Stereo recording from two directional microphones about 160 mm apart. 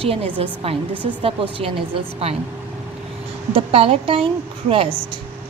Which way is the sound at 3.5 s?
35° right (ahead or behind).